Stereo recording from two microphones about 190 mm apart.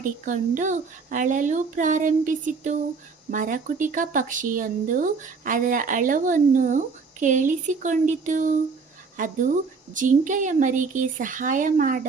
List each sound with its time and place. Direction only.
0.0 s speech: 45° right (ahead or behind)